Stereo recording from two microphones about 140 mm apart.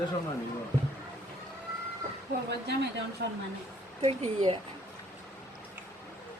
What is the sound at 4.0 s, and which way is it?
Speech, 45° right (ahead or behind).